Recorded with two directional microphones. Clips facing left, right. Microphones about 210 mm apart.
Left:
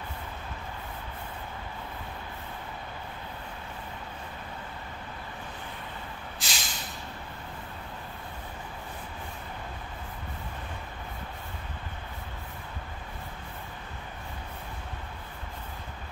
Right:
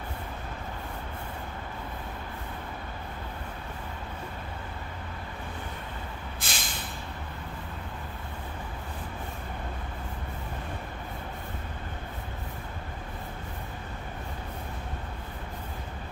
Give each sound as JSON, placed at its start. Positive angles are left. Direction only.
{"t": 6.4, "sound": "vehicle", "side_deg": -55}